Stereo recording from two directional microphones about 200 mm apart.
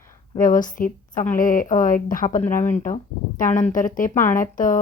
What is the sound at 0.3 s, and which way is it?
Speech, 40° left (ahead or behind).